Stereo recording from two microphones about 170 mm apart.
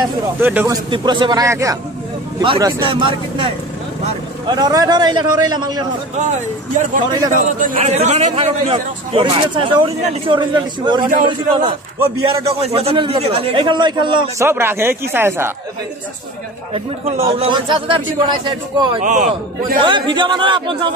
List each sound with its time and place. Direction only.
0.4 s speech: 10° right (ahead or behind)
0.8 s a man's voice: 25° right (ahead or behind)
2.4 s a man's voice: 30° right (ahead or behind)
4.5 s a man's voice: 25° right (ahead or behind)
7.3 s a man's voice: 50° right (ahead or behind); by 14.2 s 25° right (ahead or behind)
14.4 s speech: 15° right (ahead or behind)
16.7 s a man's voice: 35° right (ahead or behind)
18.9 s a man's voice: 45° right (ahead or behind)
19.8 s a man's voice: 30° right (ahead or behind)